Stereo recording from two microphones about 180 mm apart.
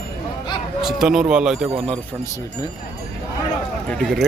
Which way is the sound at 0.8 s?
Centre (ahead or behind).